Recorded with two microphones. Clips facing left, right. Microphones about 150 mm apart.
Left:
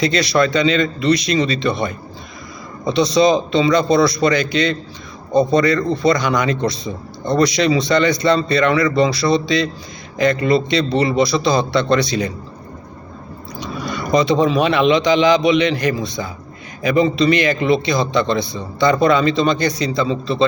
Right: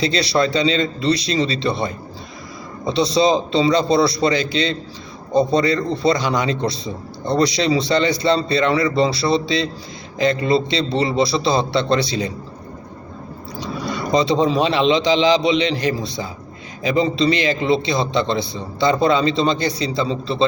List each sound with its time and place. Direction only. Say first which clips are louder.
0.0 s a man's voice: left 2 dB; 30° right (ahead or behind)
13.6 s a sound: even; 30° right (ahead or behind)
14.2 s a man's voice: left 2 dB; 30° right (ahead or behind)